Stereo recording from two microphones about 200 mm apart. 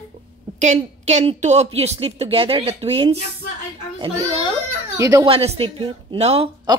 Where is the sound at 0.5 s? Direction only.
35° right (ahead or behind).